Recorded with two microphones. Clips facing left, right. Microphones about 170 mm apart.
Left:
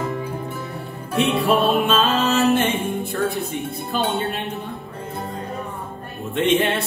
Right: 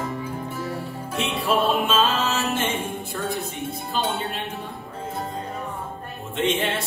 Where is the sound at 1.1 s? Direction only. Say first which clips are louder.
Left 5 dB; 60° left (ahead or behind).